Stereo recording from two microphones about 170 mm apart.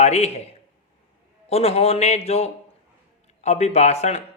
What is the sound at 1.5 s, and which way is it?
A man's voice, 35° left (ahead or behind).